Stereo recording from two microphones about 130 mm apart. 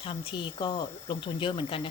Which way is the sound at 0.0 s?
40° left (ahead or behind).